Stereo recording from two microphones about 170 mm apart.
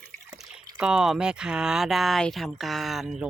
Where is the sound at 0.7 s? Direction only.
5° right (ahead or behind).